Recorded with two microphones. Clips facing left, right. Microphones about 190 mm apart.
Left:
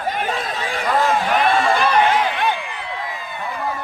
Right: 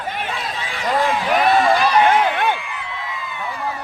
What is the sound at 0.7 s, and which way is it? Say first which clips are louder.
Run: left 1 dB; 45° left (ahead or behind).